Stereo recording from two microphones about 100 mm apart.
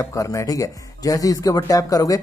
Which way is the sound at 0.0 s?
30° left (ahead or behind).